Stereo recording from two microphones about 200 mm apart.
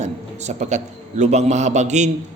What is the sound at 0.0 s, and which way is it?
A man's voice, 35° right (ahead or behind).